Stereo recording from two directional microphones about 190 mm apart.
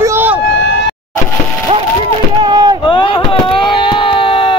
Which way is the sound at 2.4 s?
25° right (ahead or behind).